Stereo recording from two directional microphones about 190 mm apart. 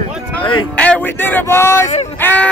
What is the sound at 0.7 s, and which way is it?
Speech, 5° left (ahead or behind).